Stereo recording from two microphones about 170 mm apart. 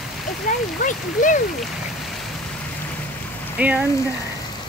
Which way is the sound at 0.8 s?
50° left (ahead or behind).